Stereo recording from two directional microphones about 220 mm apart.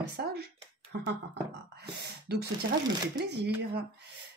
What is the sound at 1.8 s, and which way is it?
Speech, 50° right (ahead or behind).